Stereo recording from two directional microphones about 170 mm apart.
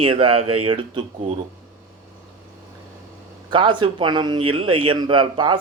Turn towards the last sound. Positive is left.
turn(degrees=-30)  # may be behind; listen again after turning